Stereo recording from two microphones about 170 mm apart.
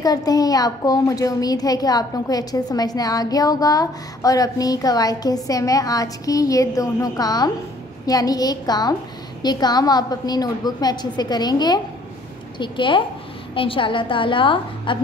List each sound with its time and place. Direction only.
0.0 s a child's voice: 20° left (ahead or behind)